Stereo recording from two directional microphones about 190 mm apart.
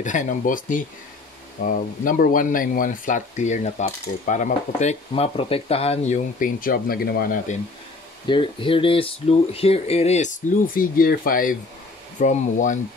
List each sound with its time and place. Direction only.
0.0 s speech: 40° left (ahead or behind)
8.3 s speech: 25° left (ahead or behind); by 12.7 s 40° left (ahead or behind)